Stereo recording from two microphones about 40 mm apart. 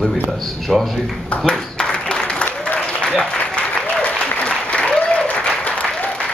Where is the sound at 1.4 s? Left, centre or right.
Left.